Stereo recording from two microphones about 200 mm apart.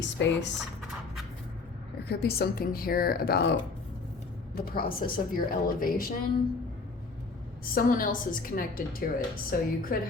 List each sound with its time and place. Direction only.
0.0 s speech: 60° left (ahead or behind)
2.0 s a woman's voice: 55° left (ahead or behind)
7.6 s a woman's voice: 45° left (ahead or behind)